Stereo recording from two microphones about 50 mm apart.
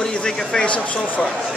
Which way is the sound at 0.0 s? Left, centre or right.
Centre.